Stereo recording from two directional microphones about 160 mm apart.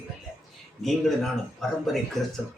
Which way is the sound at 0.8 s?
Centre (ahead or behind).